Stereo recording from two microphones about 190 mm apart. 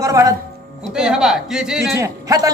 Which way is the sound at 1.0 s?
5° right (ahead or behind).